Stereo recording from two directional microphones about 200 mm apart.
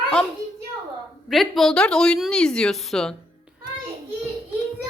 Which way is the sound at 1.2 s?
Centre (ahead or behind).